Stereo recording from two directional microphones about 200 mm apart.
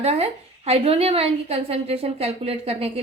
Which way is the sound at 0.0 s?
30° right (ahead or behind).